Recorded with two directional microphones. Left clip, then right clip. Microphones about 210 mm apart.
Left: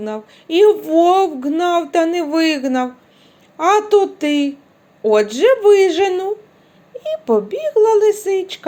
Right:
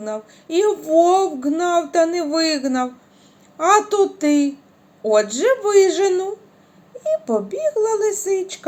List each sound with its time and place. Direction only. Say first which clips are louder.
0.0 s speech: left 2 dB; 25° left (ahead or behind)